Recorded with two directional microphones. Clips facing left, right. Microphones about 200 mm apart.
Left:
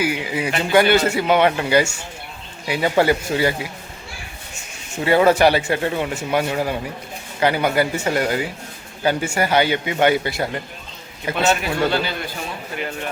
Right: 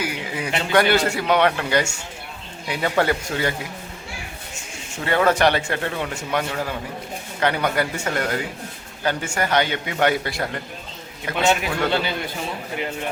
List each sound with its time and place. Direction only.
0.0 s a man's voice: 10° left (ahead or behind)
5.0 s a man's voice: 10° left (ahead or behind)
11.3 s a man's voice: 15° right (ahead or behind)